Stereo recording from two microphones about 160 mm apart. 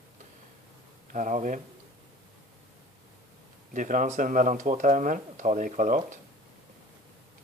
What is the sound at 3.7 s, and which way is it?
Speech, 55° right (ahead or behind).